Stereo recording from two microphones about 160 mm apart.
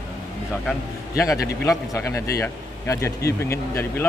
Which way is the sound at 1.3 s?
20° left (ahead or behind).